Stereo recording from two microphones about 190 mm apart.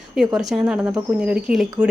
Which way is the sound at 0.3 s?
5° right (ahead or behind).